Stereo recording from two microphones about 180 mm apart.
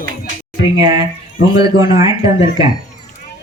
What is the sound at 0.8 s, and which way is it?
A woman's voice, 25° right (ahead or behind).